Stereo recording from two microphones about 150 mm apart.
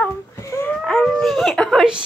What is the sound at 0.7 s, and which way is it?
A child's voice, 5° left (ahead or behind).